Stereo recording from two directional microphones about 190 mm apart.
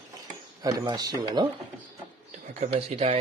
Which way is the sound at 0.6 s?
20° right (ahead or behind).